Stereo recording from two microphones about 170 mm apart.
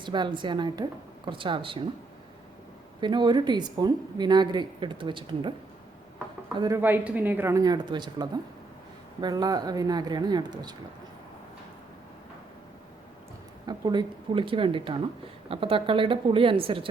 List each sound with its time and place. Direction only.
0.0 s speech: 25° right (ahead or behind)
3.0 s speech: 25° right (ahead or behind)
6.7 s speech: 10° right (ahead or behind)
13.7 s a woman's voice: 25° right (ahead or behind)